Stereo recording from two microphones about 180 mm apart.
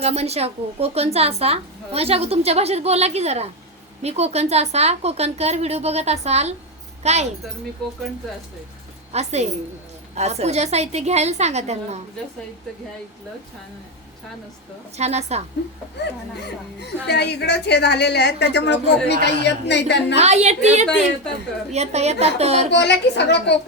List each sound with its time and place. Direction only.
0.0 s a woman's voice: 35° right (ahead or behind)
9.1 s a woman's voice: 35° right (ahead or behind)
14.9 s a woman's voice: 35° right (ahead or behind)
16.0 s a woman's voice: 70° left (ahead or behind)
20.1 s a woman's voice: 40° right (ahead or behind)
22.7 s a woman's voice: 70° left (ahead or behind)